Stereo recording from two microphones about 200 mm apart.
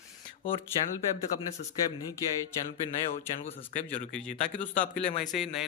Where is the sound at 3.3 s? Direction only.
40° left (ahead or behind).